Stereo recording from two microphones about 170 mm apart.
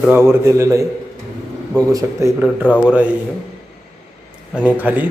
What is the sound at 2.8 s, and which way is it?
Speech, 5° right (ahead or behind).